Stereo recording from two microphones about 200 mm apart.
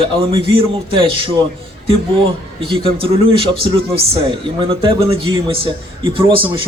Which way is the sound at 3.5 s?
30° right (ahead or behind).